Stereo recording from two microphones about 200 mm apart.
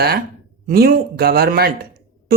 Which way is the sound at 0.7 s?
50° right (ahead or behind).